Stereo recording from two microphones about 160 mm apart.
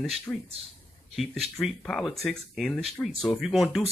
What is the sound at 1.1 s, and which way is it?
Speech, centre (ahead or behind).